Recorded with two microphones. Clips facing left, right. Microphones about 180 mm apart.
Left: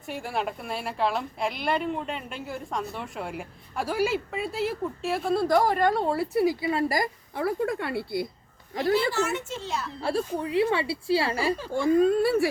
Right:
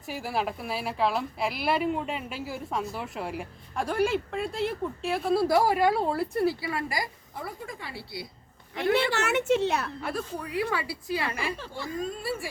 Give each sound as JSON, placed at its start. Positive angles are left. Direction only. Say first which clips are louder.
{"t": 0.0, "sound": "speech", "louder": "even", "side_deg": -5}
{"t": 6.4, "sound": "a woman's voice", "louder": "left 4 dB", "side_deg": 20}
{"t": 6.8, "sound": "a woman's voice", "louder": "left 6 dB", "side_deg": 45}
{"t": 7.3, "sound": "a woman's voice", "louder": "left 11 dB", "side_deg": 75}
{"t": 8.9, "sound": "a woman's voice", "louder": "left 1 dB", "side_deg": -70}
{"t": 10.0, "sound": "a woman's voice", "louder": "left 6 dB", "side_deg": 30}
{"t": 11.7, "sound": "a woman's voice", "louder": "left 13 dB", "side_deg": 55}